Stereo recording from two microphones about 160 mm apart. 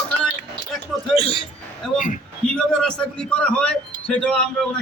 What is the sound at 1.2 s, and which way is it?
Speech, 35° left (ahead or behind).